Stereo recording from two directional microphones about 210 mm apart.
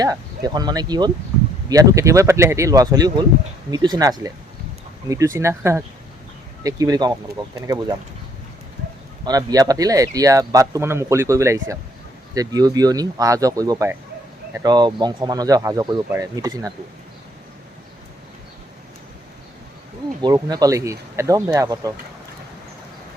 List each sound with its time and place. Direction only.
0.0 s speech: 20° right (ahead or behind)
9.2 s speech: 15° right (ahead or behind)
20.2 s speech: 20° right (ahead or behind)